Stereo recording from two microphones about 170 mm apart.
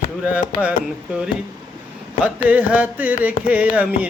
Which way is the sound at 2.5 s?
10° right (ahead or behind).